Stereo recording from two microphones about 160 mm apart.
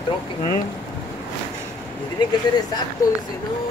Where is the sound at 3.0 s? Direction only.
20° left (ahead or behind).